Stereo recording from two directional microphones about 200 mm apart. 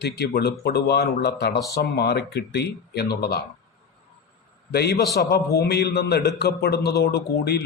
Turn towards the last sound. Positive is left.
turn(degrees=55)  # may be behind; listen again after turning